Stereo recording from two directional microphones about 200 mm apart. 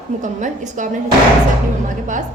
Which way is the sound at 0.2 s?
40° right (ahead or behind).